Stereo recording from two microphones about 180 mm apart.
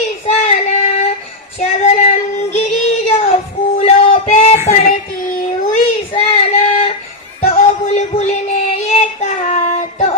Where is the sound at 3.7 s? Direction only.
35° left (ahead or behind).